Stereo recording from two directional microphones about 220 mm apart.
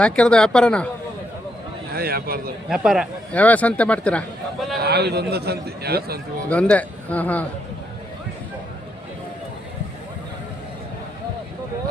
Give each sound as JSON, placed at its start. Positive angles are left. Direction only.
{"t": 0.0, "sound": "a man's voice", "side_deg": 5}
{"t": 1.9, "sound": "a man's voice", "side_deg": -45}
{"t": 2.6, "sound": "a man's voice", "side_deg": 0}
{"t": 4.8, "sound": "a man's voice", "side_deg": -45}
{"t": 6.5, "sound": "a man's voice", "side_deg": 5}